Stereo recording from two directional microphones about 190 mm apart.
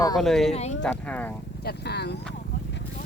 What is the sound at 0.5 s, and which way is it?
Speech, 35° left (ahead or behind).